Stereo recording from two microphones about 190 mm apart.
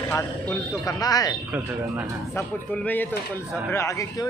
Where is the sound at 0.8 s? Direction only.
20° left (ahead or behind).